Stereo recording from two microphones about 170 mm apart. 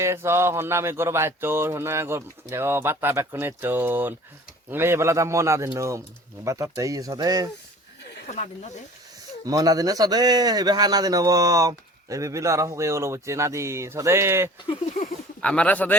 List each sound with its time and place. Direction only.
0.0 s speech: 15° right (ahead or behind)
8.3 s speech: 45° left (ahead or behind)
9.4 s speech: 20° right (ahead or behind)
15.4 s speech: 5° left (ahead or behind)